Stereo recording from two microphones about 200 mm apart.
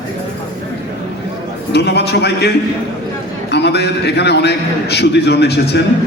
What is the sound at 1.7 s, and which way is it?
Speech, 55° left (ahead or behind).